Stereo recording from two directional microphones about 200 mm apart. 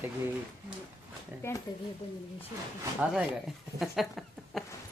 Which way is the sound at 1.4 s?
15° left (ahead or behind).